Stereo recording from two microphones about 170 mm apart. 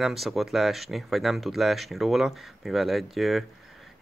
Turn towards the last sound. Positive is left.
turn(degrees=0)  # may be behind; listen again after turning